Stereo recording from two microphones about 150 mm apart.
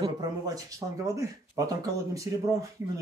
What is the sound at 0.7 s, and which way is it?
Speech, 20° right (ahead or behind).